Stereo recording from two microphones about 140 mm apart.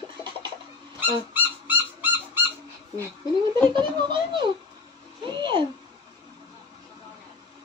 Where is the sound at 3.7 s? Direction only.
35° right (ahead or behind).